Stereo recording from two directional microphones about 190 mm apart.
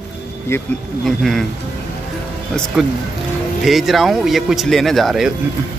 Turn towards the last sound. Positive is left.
turn(degrees=0)  # may be behind; listen again after turning